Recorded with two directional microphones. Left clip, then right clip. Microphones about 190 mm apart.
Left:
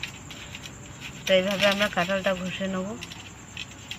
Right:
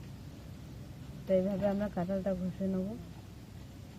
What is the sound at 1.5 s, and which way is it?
Speech, 25° left (ahead or behind).